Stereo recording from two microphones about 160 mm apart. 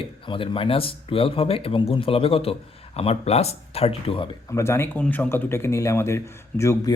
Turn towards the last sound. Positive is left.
turn(degrees=15)  # may be behind; listen again after turning